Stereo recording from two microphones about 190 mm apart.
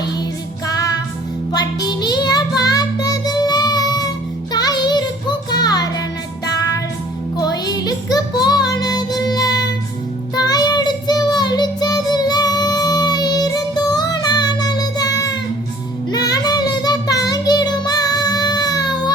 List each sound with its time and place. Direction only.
0.7 s music: 20° left (ahead or behind)
1.5 s child singing: 20° left (ahead or behind)
4.5 s music: 20° left (ahead or behind)
6.4 s child singing: 20° left (ahead or behind)
7.3 s music: 20° left (ahead or behind)
10.3 s child singing: 20° left (ahead or behind)